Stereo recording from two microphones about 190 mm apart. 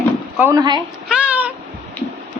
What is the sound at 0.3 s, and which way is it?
Speech, 15° right (ahead or behind).